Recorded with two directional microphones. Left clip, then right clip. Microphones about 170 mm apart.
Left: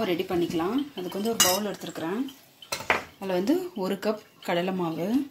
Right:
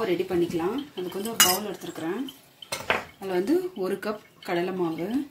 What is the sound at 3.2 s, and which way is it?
Speech, 50° left (ahead or behind).